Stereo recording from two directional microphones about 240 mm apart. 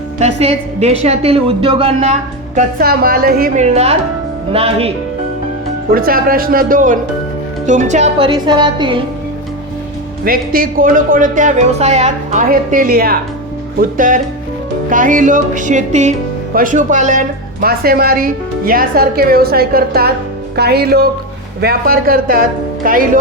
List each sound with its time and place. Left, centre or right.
0.2 s a woman's voice: right
2.6 s a woman's voice: right
5.9 s a woman's voice: right; by 9.0 s centre
10.2 s speech: right